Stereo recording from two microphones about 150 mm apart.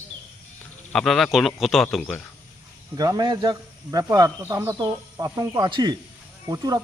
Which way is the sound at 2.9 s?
25° right (ahead or behind).